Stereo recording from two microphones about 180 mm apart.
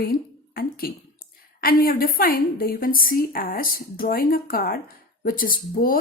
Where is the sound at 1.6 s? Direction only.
55° left (ahead or behind).